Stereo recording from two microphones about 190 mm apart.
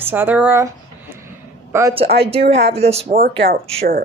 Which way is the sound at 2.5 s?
35° right (ahead or behind).